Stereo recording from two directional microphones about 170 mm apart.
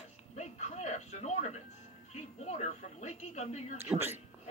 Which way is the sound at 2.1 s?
40° left (ahead or behind).